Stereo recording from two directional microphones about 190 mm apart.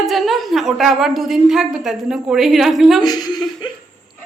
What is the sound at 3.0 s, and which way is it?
Speech, 20° left (ahead or behind).